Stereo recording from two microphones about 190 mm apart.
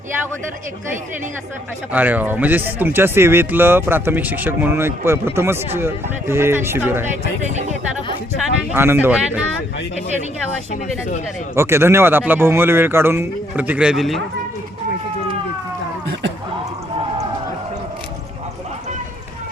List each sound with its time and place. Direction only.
1.9 s speech: 10° right (ahead or behind)
8.7 s speech: 10° right (ahead or behind)
11.5 s speech: 15° right (ahead or behind)